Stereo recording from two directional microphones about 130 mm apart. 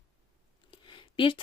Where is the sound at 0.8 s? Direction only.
40° left (ahead or behind).